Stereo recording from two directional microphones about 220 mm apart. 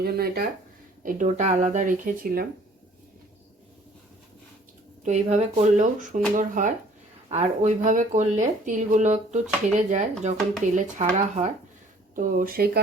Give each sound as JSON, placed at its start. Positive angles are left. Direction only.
{"t": 0.0, "sound": "speech", "side_deg": -45}
{"t": 1.0, "sound": "speech", "side_deg": -35}
{"t": 5.0, "sound": "speech", "side_deg": -30}